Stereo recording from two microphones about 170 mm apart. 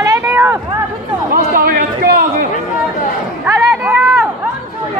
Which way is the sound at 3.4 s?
15° right (ahead or behind).